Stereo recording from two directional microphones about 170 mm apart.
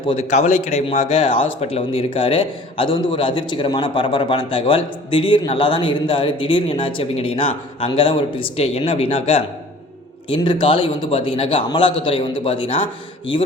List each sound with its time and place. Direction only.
0.1 s a man's voice: 40° left (ahead or behind)